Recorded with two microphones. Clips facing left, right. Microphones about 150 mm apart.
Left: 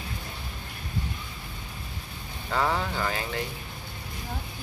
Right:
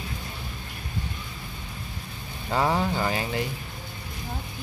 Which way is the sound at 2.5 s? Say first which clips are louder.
Right 3 dB; 15° right (ahead or behind).